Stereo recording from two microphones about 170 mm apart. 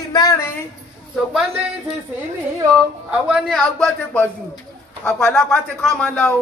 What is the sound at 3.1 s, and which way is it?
Speech, 5° right (ahead or behind).